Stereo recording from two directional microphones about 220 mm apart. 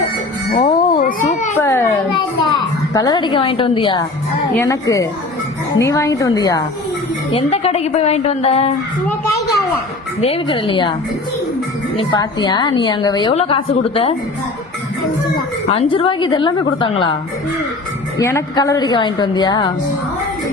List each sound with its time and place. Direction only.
0.5 s cat: 35° left (ahead or behind)
1.5 s children playing: 10° left (ahead or behind)
2.9 s a woman's voice: 20° left (ahead or behind)
4.5 s a woman's voice: 15° left (ahead or behind)
7.3 s a woman's voice: 25° left (ahead or behind)
10.2 s a woman's voice: 25° left (ahead or behind)
11.9 s a woman's voice: 20° left (ahead or behind)
15.4 s a woman's voice: 25° left (ahead or behind)
18.2 s a woman's voice: 15° left (ahead or behind)